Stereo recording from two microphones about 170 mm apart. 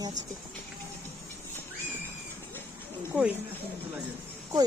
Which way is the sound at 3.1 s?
10° right (ahead or behind).